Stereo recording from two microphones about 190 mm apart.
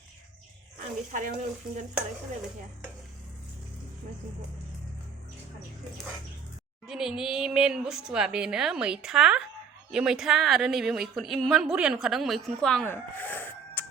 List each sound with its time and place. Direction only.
1.1 s speech: 45° right (ahead or behind)
6.8 s a woman's voice: centre (ahead or behind)